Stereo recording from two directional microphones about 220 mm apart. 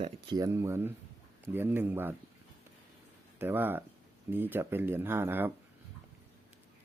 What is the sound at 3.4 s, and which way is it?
Speech, 10° right (ahead or behind).